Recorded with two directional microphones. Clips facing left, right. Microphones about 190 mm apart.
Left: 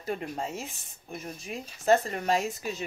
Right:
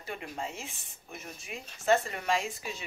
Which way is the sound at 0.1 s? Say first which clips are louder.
Left 5 dB; 40° left (ahead or behind).